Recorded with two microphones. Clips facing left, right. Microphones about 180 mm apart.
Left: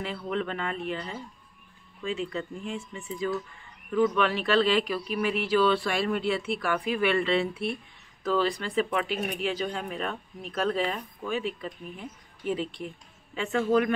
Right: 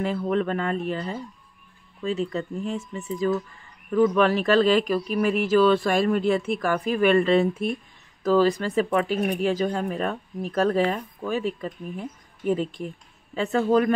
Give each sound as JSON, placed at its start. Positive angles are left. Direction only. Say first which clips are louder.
{"t": 0.0, "sound": "speech", "louder": "right 7 dB", "side_deg": -45}